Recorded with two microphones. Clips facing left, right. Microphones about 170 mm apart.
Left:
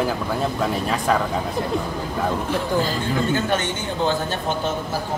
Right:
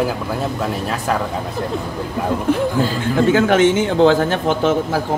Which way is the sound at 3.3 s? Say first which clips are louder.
Right 9 dB; 90° right.